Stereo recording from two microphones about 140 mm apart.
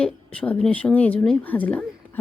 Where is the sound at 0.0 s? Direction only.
10° left (ahead or behind).